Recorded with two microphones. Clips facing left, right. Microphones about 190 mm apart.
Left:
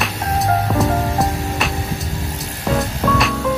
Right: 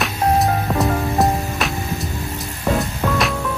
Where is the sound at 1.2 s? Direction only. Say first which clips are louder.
Right 1 dB; centre (ahead or behind).